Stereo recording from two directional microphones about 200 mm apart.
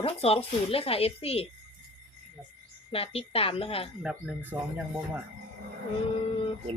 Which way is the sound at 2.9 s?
30° left (ahead or behind).